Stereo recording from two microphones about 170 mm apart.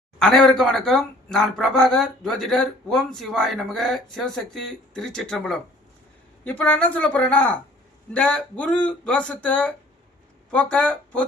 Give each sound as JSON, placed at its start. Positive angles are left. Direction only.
{"t": 0.2, "sound": "speech", "side_deg": 0}